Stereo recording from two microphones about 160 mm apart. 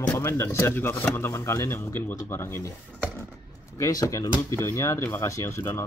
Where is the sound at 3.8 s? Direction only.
20° left (ahead or behind).